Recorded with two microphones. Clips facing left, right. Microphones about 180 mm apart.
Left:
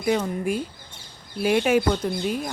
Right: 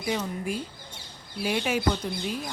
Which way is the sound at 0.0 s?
55° left (ahead or behind).